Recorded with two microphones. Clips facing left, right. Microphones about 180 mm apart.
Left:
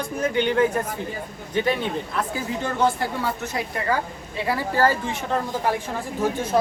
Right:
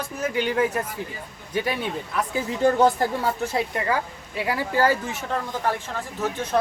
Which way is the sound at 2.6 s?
40° right (ahead or behind).